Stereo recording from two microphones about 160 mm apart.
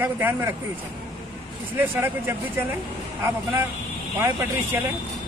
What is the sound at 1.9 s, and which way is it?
A man's voice, 15° right (ahead or behind).